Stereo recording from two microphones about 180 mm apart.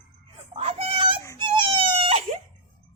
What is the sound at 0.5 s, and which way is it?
Whimper, 35° right (ahead or behind).